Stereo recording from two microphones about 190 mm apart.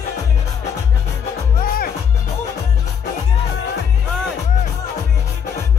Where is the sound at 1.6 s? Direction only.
50° left (ahead or behind).